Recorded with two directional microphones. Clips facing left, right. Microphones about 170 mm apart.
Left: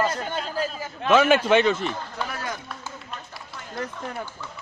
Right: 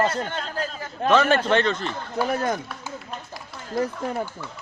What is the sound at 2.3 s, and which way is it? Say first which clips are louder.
Speech: right 8 dB; 50° right (ahead or behind).